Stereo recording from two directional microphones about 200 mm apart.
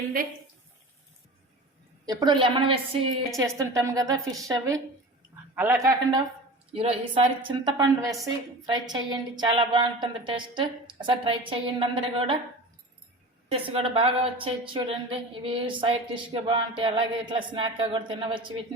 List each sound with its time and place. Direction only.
2.0 s a woman's voice: 25° right (ahead or behind)
3.3 s a woman's voice: 15° right (ahead or behind)
13.5 s a woman's voice: 25° right (ahead or behind)